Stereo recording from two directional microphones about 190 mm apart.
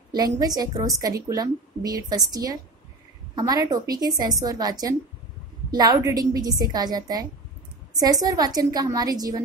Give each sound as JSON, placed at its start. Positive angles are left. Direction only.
{"t": 0.1, "sound": "a woman's voice", "side_deg": -20}